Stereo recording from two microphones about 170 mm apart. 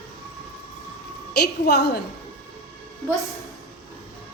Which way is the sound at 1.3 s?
75° left (ahead or behind).